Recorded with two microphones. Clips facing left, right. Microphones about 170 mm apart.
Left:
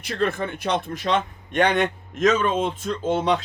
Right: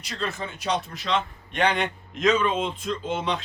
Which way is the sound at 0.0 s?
55° left (ahead or behind).